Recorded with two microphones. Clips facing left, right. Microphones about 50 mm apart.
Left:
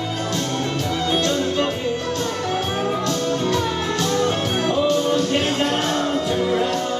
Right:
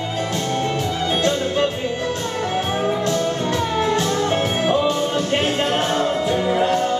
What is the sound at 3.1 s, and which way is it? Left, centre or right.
Music, right.